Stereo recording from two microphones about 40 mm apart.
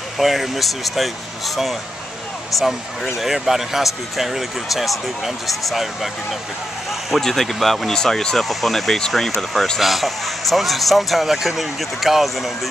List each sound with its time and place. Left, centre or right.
0.2 s speech: centre
2.6 s speech: centre
7.2 s speech: centre
7.9 s speech: centre
8.5 s speech: centre